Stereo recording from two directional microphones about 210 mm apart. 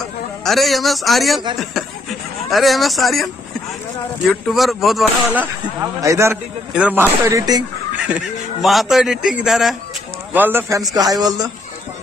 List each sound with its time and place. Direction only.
0.4 s a man's voice: centre (ahead or behind)
4.3 s speech: centre (ahead or behind); by 7.6 s 15° right (ahead or behind)
8.6 s a man's voice: centre (ahead or behind); by 11.5 s 20° right (ahead or behind)